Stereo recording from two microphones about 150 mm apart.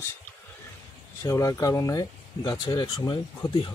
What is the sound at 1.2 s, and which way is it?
Speech, 20° left (ahead or behind).